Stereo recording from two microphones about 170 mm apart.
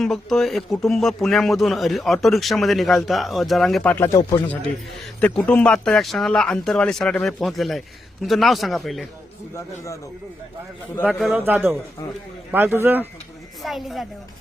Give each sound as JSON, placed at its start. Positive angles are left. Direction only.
{"t": 0.0, "sound": "speech", "side_deg": 0}
{"t": 9.6, "sound": "speech", "side_deg": 15}
{"t": 11.0, "sound": "a man's voice", "side_deg": -5}
{"t": 13.6, "sound": "speech", "side_deg": 0}